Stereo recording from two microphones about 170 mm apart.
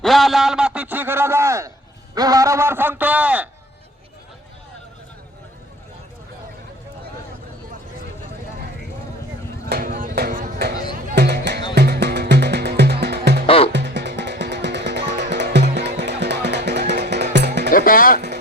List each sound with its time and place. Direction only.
0.0 s a sound: centre (ahead or behind); by 1.7 s 15° right (ahead or behind)
2.1 s a man's voice: 20° right (ahead or behind)
9.6 s a sound: 60° right (ahead or behind)
11.1 s music: 75° right (ahead or behind)
13.7 s music: 90° right
17.7 s speech: 55° left (ahead or behind)